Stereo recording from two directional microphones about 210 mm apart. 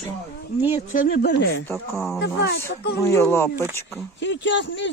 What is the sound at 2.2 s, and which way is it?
Speech, 55° left (ahead or behind).